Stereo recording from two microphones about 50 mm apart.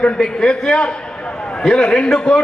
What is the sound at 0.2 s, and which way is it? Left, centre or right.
A man's voice, centre.